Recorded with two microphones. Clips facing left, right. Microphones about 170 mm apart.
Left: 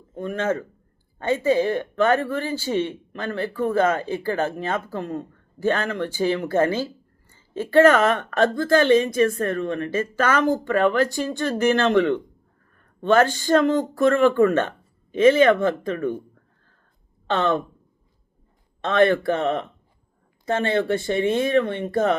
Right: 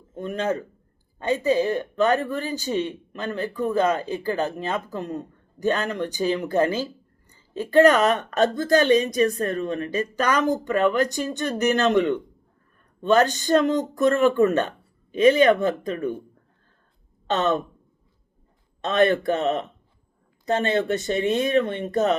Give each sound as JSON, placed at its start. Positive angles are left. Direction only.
{"t": 0.2, "sound": "speech", "side_deg": -20}
{"t": 17.2, "sound": "speech", "side_deg": -20}
{"t": 18.9, "sound": "speech", "side_deg": -20}